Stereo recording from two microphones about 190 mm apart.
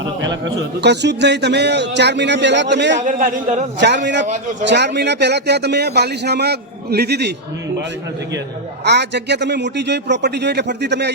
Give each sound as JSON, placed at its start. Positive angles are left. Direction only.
{"t": 0.8, "sound": "speech", "side_deg": -65}
{"t": 3.0, "sound": "a man's voice", "side_deg": -40}
{"t": 3.8, "sound": "a man's voice", "side_deg": -65}
{"t": 8.8, "sound": "speech", "side_deg": -65}